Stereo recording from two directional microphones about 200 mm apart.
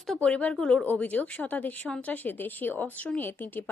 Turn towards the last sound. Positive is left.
turn(degrees=10)  # may be behind; listen again after turning